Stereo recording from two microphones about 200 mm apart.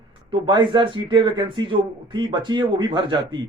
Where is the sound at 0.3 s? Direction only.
20° right (ahead or behind).